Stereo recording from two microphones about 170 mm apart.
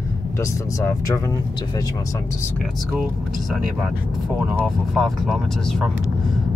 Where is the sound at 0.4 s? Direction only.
20° left (ahead or behind).